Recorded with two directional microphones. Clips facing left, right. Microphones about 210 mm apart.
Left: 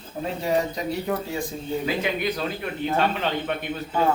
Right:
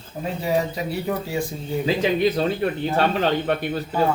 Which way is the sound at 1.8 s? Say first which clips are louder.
Right 8 dB; 25° right (ahead or behind).